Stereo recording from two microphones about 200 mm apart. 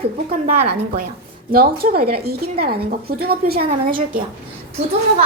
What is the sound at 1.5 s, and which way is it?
A woman's voice, 50° right (ahead or behind).